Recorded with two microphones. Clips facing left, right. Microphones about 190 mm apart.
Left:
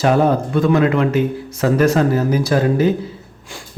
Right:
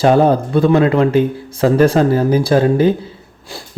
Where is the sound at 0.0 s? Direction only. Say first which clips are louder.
Right 3 dB; 30° right (ahead or behind).